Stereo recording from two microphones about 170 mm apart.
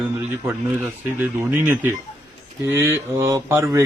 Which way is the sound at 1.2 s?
10° right (ahead or behind).